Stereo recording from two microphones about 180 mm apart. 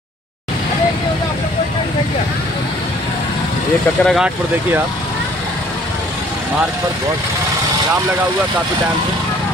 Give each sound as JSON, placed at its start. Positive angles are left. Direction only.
{"t": 4.0, "sound": "speech", "side_deg": 0}